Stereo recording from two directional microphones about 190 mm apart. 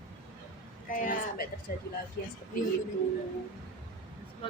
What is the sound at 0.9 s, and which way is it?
Speech, 45° left (ahead or behind).